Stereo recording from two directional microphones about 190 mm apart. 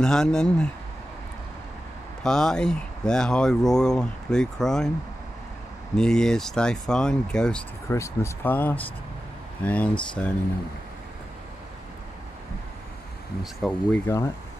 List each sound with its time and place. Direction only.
0.0 s speech: 5° left (ahead or behind)
2.2 s speech: 5° left (ahead or behind)
5.9 s speech: 5° left (ahead or behind)
7.9 s speech: 15° left (ahead or behind)
13.4 s speech: centre (ahead or behind)
14.0 s speech: 15° left (ahead or behind)